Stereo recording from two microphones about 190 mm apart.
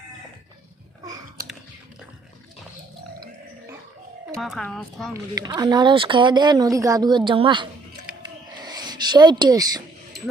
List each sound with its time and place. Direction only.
4.4 s speech: centre (ahead or behind)
5.1 s speech: 20° right (ahead or behind)
8.5 s a sound: 20° right (ahead or behind)